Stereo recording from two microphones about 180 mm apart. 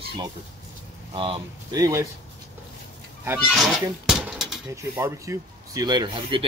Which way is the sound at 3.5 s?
Centre (ahead or behind).